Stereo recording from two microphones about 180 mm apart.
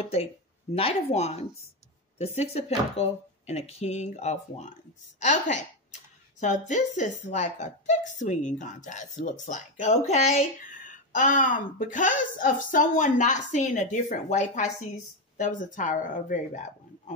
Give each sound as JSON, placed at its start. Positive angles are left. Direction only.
{"t": 0.0, "sound": "a woman's voice", "side_deg": 35}
{"t": 7.0, "sound": "a woman's voice", "side_deg": 40}